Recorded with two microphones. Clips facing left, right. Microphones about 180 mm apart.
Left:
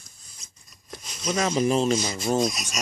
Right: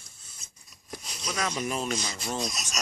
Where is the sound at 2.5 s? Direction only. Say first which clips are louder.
Left 3 dB; 10° left (ahead or behind).